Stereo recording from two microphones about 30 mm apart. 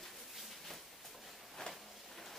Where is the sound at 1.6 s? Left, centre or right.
Left.